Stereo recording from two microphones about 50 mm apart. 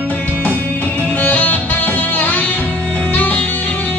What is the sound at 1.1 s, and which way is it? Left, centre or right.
Music, left.